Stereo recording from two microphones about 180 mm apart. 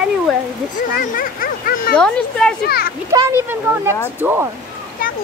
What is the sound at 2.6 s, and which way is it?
Speech, 60° left (ahead or behind).